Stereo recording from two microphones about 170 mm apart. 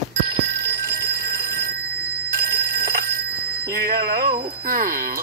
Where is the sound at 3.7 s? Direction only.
65° right (ahead or behind).